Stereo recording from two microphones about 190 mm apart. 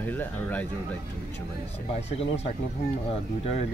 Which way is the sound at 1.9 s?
35° left (ahead or behind).